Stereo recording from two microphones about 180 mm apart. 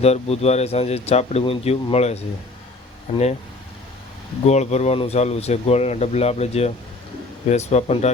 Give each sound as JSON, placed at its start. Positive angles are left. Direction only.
{"t": 0.0, "sound": "speech", "side_deg": 35}
{"t": 4.4, "sound": "speech", "side_deg": 40}